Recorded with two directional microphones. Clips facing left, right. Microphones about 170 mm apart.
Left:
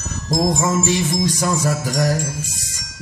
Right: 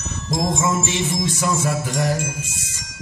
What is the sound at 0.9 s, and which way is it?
Jingle bell, 40° left (ahead or behind).